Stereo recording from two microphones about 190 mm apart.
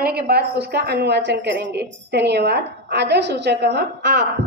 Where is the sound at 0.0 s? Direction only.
55° right (ahead or behind).